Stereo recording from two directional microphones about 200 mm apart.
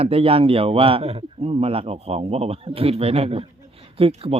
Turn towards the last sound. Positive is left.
turn(degrees=-30)  # may be behind; listen again after turning